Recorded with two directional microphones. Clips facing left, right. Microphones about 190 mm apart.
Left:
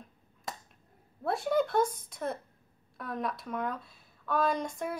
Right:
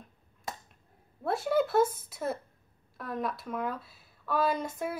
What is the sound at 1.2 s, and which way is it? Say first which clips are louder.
A woman's voice: right 1 dB; centre (ahead or behind).